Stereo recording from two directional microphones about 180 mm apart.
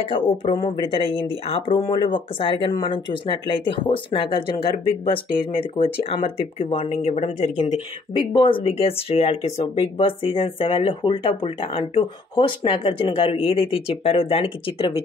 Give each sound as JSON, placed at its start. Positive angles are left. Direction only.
{"t": 0.5, "sound": "speech", "side_deg": 25}